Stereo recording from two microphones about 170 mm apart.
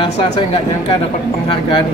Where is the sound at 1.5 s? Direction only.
30° left (ahead or behind).